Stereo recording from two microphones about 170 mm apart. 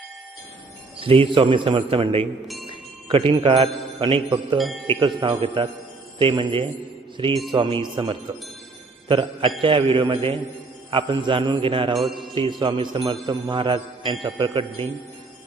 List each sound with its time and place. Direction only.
0.9 s a man's voice: 30° right (ahead or behind)
4.5 s a man's voice: centre (ahead or behind)
4.9 s a man's voice: 30° right (ahead or behind)
11.9 s a man's voice: centre (ahead or behind)
12.3 s a man's voice: 25° right (ahead or behind)